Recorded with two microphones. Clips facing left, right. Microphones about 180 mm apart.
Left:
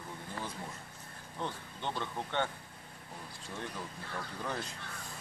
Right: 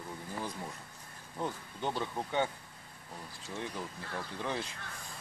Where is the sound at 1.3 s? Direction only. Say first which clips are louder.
Right 2 dB; 5° right (ahead or behind).